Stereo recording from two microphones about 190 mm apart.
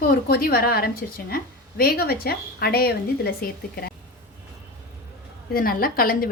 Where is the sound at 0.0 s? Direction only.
50° left (ahead or behind).